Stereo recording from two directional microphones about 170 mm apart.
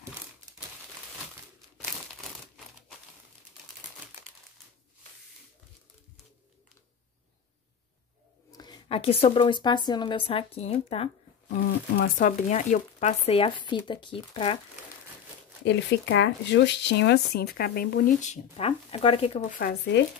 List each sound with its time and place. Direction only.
8.5 s a woman's voice: 25° left (ahead or behind)
15.6 s speech: 90° left; by 18.1 s 60° left (ahead or behind)
18.2 s speech: 40° left (ahead or behind)
19.5 s speech: 65° left (ahead or behind)